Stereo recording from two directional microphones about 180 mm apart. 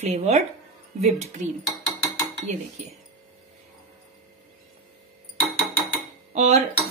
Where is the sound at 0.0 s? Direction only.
40° right (ahead or behind).